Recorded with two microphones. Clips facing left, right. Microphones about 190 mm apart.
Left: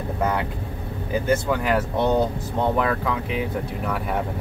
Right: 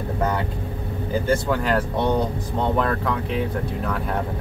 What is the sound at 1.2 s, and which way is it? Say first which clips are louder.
Speech: even; 10° left (ahead or behind).